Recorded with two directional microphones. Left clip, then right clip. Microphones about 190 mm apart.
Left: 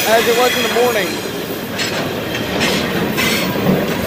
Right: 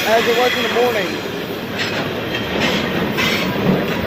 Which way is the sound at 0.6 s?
60° left (ahead or behind).